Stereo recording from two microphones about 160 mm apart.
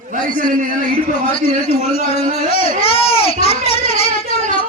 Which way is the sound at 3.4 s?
40° left (ahead or behind).